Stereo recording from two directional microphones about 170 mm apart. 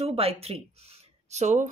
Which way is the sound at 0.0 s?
35° right (ahead or behind).